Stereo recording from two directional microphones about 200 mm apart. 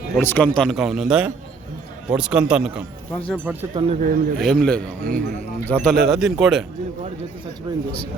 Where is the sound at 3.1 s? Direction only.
5° left (ahead or behind).